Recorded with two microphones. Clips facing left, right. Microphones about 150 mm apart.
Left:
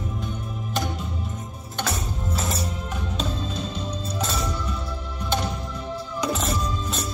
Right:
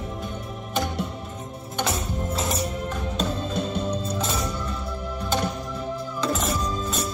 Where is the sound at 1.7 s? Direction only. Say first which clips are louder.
Right 2 dB; 20° right (ahead or behind).